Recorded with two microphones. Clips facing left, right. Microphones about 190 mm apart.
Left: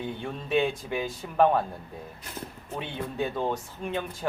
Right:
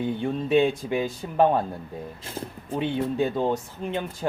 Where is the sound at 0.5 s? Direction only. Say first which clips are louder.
Right 4 dB; 15° right (ahead or behind).